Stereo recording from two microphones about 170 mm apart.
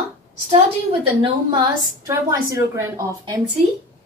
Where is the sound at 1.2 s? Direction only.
25° right (ahead or behind).